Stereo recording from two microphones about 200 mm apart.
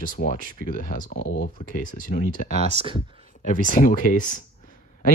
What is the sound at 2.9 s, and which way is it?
Speech, 45° left (ahead or behind).